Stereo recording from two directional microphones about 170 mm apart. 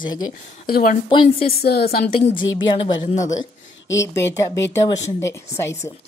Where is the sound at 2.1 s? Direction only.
30° left (ahead or behind).